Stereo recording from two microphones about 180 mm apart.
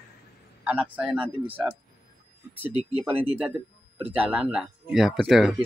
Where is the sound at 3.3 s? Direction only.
10° right (ahead or behind).